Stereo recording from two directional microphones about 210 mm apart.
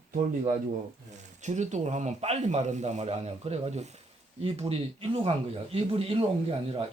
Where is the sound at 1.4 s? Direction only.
35° right (ahead or behind).